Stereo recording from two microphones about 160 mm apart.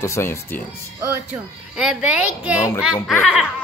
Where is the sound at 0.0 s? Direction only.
15° left (ahead or behind).